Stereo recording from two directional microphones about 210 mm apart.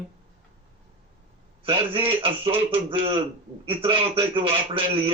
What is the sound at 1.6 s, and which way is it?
A man's voice, 25° right (ahead or behind).